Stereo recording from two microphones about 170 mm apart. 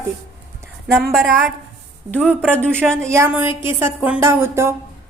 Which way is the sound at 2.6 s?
10° right (ahead or behind).